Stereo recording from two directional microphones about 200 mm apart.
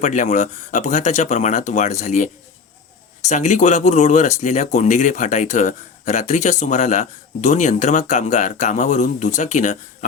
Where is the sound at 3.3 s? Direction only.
35° left (ahead or behind).